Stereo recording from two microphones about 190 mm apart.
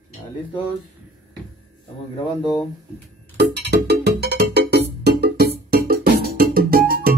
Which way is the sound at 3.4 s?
60° right (ahead or behind).